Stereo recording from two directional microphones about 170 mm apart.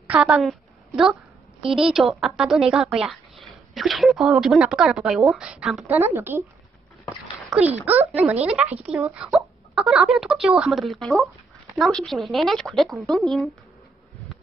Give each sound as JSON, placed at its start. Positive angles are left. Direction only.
{"t": 0.0, "sound": "a woman's voice", "side_deg": -10}
{"t": 5.9, "sound": "speech", "side_deg": -15}
{"t": 7.8, "sound": "a woman's voice", "side_deg": -10}